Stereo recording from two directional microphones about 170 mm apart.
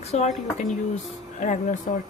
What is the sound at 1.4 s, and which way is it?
Speech, 50° left (ahead or behind).